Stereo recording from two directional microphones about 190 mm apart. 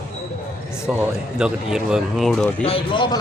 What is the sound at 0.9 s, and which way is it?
Speech, 5° right (ahead or behind).